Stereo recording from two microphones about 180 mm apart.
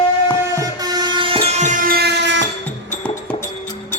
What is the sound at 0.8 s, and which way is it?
Train, 20° right (ahead or behind).